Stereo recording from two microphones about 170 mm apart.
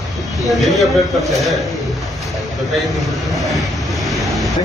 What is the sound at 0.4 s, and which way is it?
Speech, centre (ahead or behind).